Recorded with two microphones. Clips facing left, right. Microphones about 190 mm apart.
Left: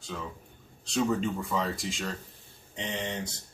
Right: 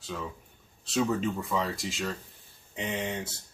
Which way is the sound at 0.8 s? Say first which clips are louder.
Even; centre (ahead or behind).